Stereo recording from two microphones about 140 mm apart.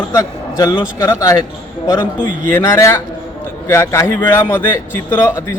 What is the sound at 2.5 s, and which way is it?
A man's voice, 20° left (ahead or behind).